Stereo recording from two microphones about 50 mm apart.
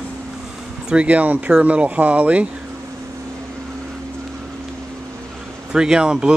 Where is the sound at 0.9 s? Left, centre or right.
Right.